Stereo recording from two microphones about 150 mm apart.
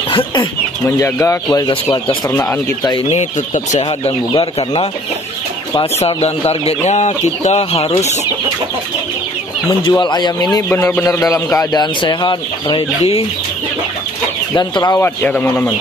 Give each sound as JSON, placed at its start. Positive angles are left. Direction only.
{"t": 0.1, "sound": "speech", "side_deg": 30}
{"t": 0.8, "sound": "a man's voice", "side_deg": 20}
{"t": 3.1, "sound": "speech", "side_deg": 50}
{"t": 4.3, "sound": "speech", "side_deg": 35}
{"t": 9.8, "sound": "speech", "side_deg": 30}
{"t": 10.7, "sound": "speech", "side_deg": 15}
{"t": 14.5, "sound": "speech", "side_deg": 25}
{"t": 15.0, "sound": "a man's voice", "side_deg": 10}